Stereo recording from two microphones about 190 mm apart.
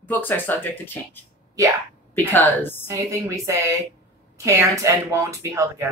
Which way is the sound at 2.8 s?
15° right (ahead or behind).